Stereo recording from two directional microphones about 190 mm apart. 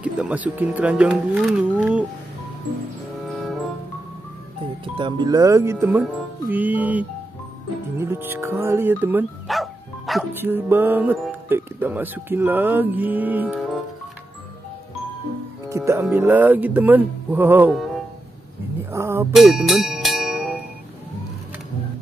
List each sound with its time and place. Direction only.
0.0 s speech: 5° right (ahead or behind)
4.8 s speech: 25° right (ahead or behind); by 10.2 s centre (ahead or behind)
10.3 s speech: 10° right (ahead or behind)
15.7 s speech: 15° right (ahead or behind)
18.8 s a sound: 15° right (ahead or behind)
19.3 s music: centre (ahead or behind)